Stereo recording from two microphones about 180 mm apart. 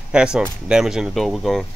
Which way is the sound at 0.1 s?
5° right (ahead or behind).